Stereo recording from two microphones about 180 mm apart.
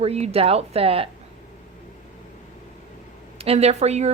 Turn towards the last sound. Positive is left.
turn(degrees=-35)  # may be behind; listen again after turning